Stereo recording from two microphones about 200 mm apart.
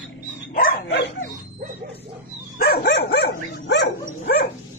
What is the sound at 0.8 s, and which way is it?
Dog, 65° left (ahead or behind).